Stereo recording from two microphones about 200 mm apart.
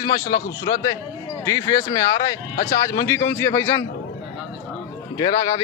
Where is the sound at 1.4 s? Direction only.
15° left (ahead or behind).